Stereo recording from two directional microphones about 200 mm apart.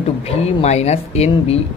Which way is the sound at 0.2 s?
30° left (ahead or behind).